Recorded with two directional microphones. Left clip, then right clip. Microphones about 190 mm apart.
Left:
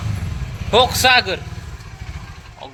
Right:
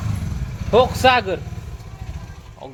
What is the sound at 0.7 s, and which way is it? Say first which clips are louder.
Speech: left 1 dB; 25° right (ahead or behind).